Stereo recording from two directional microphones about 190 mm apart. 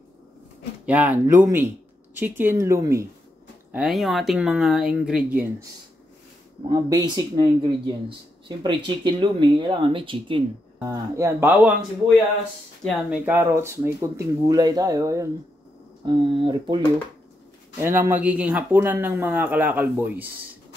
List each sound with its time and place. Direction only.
0.8 s speech: 10° right (ahead or behind)
3.7 s speech: centre (ahead or behind)
6.7 s speech: 20° right (ahead or behind)
12.8 s speech: centre (ahead or behind)
13.2 s speech: 10° right (ahead or behind)
17.7 s speech: 15° right (ahead or behind)